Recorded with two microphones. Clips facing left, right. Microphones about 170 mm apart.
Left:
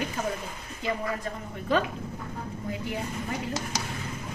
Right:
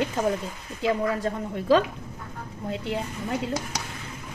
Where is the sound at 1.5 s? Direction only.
90° right.